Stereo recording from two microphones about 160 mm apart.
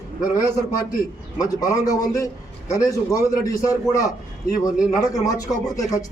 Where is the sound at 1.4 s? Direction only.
20° left (ahead or behind).